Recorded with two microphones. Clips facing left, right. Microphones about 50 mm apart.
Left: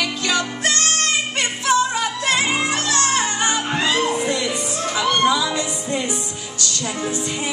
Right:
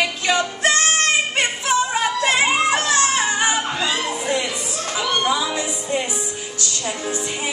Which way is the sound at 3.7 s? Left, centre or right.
Left.